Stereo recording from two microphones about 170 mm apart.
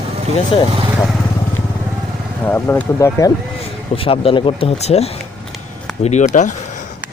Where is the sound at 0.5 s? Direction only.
35° left (ahead or behind).